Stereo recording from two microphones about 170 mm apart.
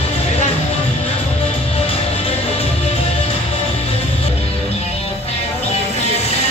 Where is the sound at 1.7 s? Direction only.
35° left (ahead or behind).